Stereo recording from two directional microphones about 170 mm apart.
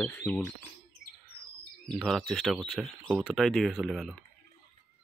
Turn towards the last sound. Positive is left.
turn(degrees=0)  # may be behind; listen again after turning